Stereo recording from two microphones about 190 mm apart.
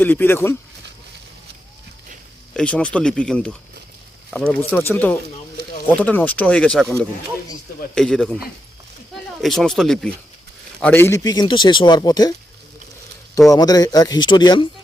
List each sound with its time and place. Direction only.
0.0 s speech: 10° left (ahead or behind)
2.5 s speech: 5° left (ahead or behind)
7.9 s speech: 5° left (ahead or behind); by 12.3 s 20° left (ahead or behind)
13.5 s speech: 20° left (ahead or behind)